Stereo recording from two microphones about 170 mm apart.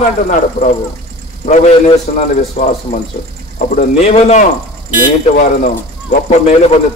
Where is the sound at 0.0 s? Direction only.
45° left (ahead or behind).